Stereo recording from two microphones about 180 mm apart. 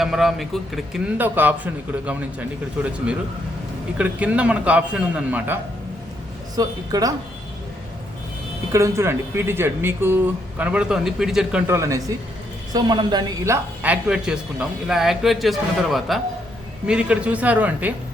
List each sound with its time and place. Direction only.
0.0 s speech: centre (ahead or behind)
3.9 s speech: 5° right (ahead or behind)
6.6 s speech: 20° right (ahead or behind)
8.7 s speech: 15° right (ahead or behind)